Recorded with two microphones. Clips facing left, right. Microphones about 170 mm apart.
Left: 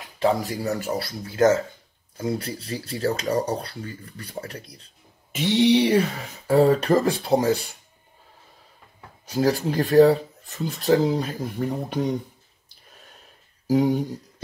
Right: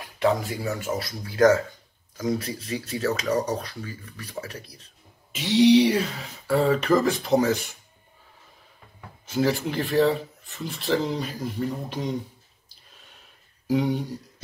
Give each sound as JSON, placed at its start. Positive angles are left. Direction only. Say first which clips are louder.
{"t": 0.2, "sound": "speech", "louder": "left 1 dB", "side_deg": 40}
{"t": 5.3, "sound": "speech", "louder": "right 1 dB", "side_deg": 55}
{"t": 6.4, "sound": "speech", "louder": "left 4 dB", "side_deg": 40}
{"t": 9.2, "sound": "speech", "louder": "left 2 dB", "side_deg": 40}
{"t": 13.7, "sound": "speech", "louder": "left 4 dB", "side_deg": 45}